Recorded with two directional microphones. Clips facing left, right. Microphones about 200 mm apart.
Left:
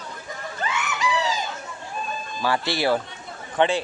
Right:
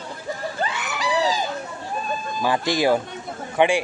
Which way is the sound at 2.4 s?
15° right (ahead or behind).